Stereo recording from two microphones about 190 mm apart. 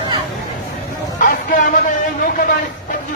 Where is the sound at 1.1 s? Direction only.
45° left (ahead or behind).